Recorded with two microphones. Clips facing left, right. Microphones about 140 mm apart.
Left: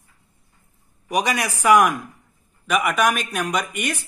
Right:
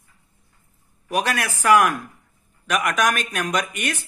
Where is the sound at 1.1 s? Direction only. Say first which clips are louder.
Left 1 dB; 10° left (ahead or behind).